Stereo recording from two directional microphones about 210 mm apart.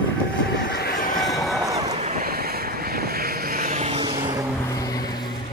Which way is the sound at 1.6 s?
15° right (ahead or behind).